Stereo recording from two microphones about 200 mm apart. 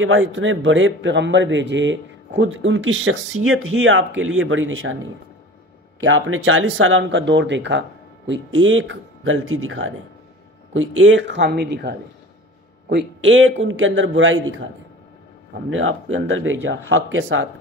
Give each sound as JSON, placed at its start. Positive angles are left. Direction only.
{"t": 0.0, "sound": "a man's voice", "side_deg": -75}
{"t": 5.9, "sound": "a man's voice", "side_deg": -80}
{"t": 8.3, "sound": "a man's voice", "side_deg": -75}
{"t": 12.9, "sound": "a man's voice", "side_deg": -65}
{"t": 15.7, "sound": "speech", "side_deg": -85}